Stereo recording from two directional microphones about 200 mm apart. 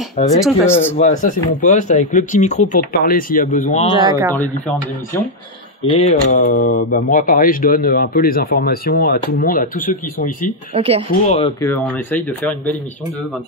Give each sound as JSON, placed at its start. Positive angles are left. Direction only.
{"t": 0.2, "sound": "speech", "side_deg": 35}
{"t": 0.7, "sound": "speech", "side_deg": 10}
{"t": 0.9, "sound": "speech", "side_deg": 40}
{"t": 4.0, "sound": "speech", "side_deg": -15}
{"t": 5.9, "sound": "speech", "side_deg": 30}
{"t": 10.7, "sound": "speech", "side_deg": -30}
{"t": 11.2, "sound": "speech", "side_deg": 30}
{"t": 11.6, "sound": "speech", "side_deg": 5}